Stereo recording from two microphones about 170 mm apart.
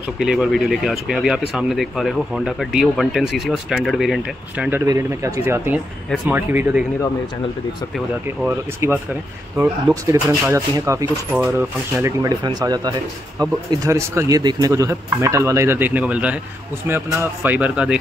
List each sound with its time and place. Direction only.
0.2 s speech: centre (ahead or behind)
8.5 s speech: 15° right (ahead or behind)